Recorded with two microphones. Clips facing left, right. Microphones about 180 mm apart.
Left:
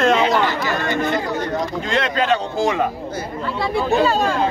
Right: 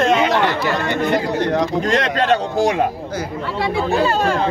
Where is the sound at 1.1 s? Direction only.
75° right (ahead or behind).